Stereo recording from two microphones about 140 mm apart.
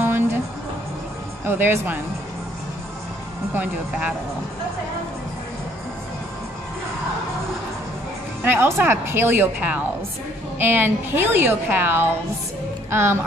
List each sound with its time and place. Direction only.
0.0 s music: 15° right (ahead or behind)
1.4 s a woman's voice: 15° right (ahead or behind)
3.5 s a woman's voice: 10° right (ahead or behind)
8.5 s a woman's voice: 15° right (ahead or behind)